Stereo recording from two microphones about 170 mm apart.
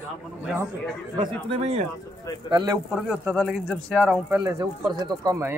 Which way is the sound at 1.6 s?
40° right (ahead or behind).